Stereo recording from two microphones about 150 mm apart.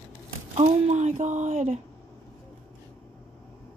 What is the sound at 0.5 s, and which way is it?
Speech, 45° right (ahead or behind).